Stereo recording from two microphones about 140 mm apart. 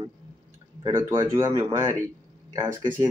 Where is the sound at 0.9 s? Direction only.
20° right (ahead or behind).